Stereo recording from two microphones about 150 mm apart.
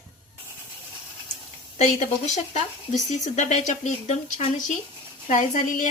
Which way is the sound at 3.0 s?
50° left (ahead or behind).